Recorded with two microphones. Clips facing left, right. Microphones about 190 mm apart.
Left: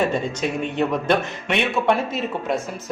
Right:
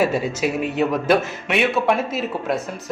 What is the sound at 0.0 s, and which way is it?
A man's voice, 5° right (ahead or behind).